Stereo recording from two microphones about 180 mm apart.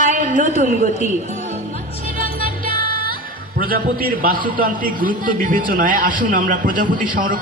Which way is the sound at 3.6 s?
50° right (ahead or behind).